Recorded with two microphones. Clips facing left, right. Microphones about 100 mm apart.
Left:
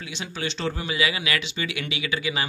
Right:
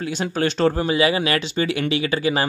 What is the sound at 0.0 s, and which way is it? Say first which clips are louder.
Speech: right 10 dB; 45° right (ahead or behind).